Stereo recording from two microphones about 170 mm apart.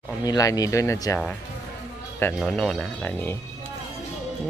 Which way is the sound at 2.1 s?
10° left (ahead or behind).